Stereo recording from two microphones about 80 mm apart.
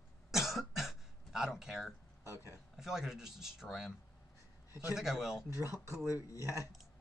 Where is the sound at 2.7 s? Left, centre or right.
Centre.